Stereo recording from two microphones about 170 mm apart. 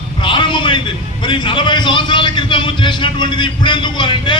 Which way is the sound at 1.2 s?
25° left (ahead or behind).